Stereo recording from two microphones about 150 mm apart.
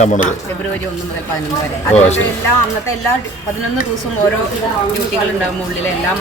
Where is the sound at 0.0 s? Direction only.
55° left (ahead or behind).